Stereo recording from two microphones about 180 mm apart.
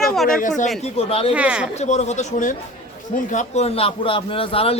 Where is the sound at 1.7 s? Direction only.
40° left (ahead or behind).